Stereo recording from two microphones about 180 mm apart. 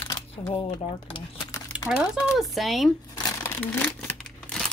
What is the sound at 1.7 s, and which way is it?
Speech, 5° right (ahead or behind).